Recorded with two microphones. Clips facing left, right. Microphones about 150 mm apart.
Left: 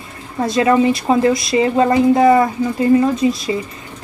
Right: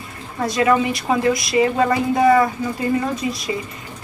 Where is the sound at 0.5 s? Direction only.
25° left (ahead or behind).